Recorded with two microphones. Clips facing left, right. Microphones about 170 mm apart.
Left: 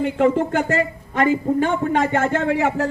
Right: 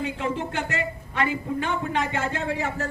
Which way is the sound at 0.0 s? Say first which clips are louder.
Left 10 dB; 55° left (ahead or behind).